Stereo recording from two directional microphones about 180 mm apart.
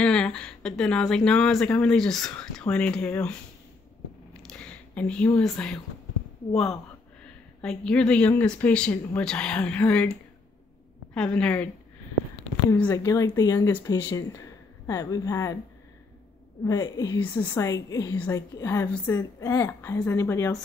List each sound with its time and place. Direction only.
0.0 s a woman's voice: 5° left (ahead or behind)
4.5 s speech: 5° left (ahead or behind)
11.1 s a woman's voice: 5° left (ahead or behind)
12.7 s a woman's voice: 15° left (ahead or behind)
16.6 s a woman's voice: 20° left (ahead or behind)